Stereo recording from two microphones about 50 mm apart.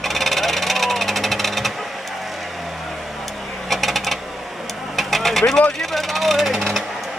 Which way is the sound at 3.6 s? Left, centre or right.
Centre.